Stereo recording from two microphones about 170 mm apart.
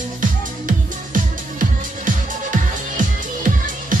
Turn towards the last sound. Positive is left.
turn(degrees=-50)  # may be behind; listen again after turning